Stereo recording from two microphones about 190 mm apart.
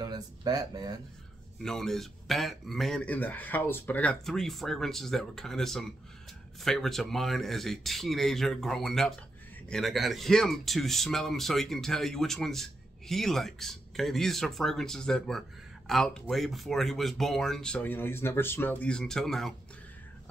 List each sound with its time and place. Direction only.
0.0 s speech: 20° right (ahead or behind)
1.6 s speech: centre (ahead or behind)